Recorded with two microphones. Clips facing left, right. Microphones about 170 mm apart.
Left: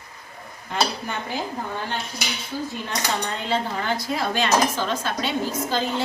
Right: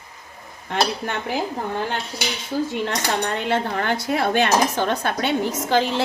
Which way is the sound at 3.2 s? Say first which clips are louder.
Right 3 dB; 65° right (ahead or behind).